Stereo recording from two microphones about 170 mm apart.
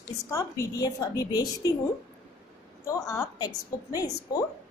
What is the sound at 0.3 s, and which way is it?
A woman's voice, 20° left (ahead or behind).